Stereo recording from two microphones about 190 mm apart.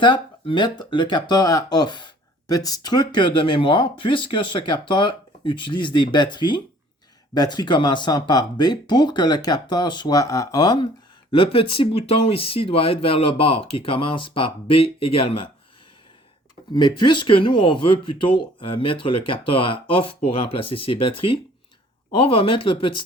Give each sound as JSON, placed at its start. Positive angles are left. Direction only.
{"t": 0.0, "sound": "speech", "side_deg": 25}
{"t": 16.7, "sound": "speech", "side_deg": 25}